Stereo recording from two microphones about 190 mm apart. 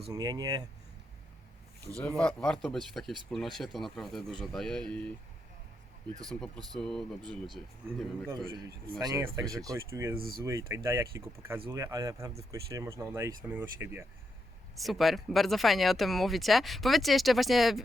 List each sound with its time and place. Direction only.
0.1 s speech: 20° right (ahead or behind)
2.0 s speech: 5° left (ahead or behind)
6.2 s speech: 5° left (ahead or behind)
9.0 s speech: 20° right (ahead or behind)
10.2 s speech: 50° right (ahead or behind)
10.4 s speech: 15° right (ahead or behind)
14.8 s speech: centre (ahead or behind)